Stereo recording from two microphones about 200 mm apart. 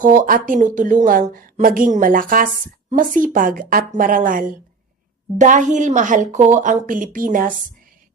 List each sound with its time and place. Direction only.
0.0 s a woman's voice: 40° right (ahead or behind)